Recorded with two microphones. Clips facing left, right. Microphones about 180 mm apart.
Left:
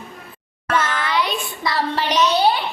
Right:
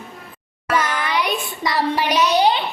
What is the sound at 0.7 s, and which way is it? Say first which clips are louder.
Child singing: even; 10° right (ahead or behind).